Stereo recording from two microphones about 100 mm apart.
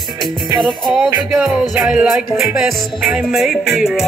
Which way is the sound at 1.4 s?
10° right (ahead or behind).